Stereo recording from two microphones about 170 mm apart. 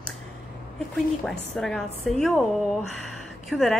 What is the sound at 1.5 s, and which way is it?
Speech, 5° left (ahead or behind).